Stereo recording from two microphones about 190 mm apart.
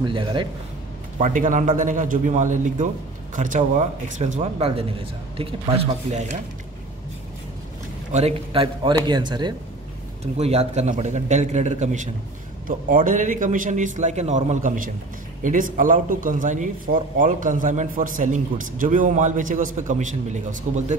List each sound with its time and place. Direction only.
0.0 s speech: 25° right (ahead or behind)
1.2 s a man's voice: 40° right (ahead or behind)
5.9 s a man's voice: 35° right (ahead or behind)
8.1 s a man's voice: 35° right (ahead or behind)
10.2 s a man's voice: 35° right (ahead or behind)